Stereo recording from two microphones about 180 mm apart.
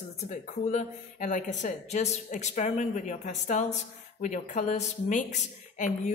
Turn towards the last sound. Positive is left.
turn(degrees=40)  # may be behind; listen again after turning